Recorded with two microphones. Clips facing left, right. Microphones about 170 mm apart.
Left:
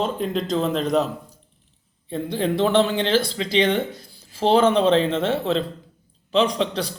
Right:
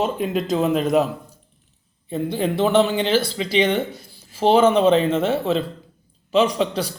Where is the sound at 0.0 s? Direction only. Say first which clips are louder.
Right 2 dB; 5° right (ahead or behind).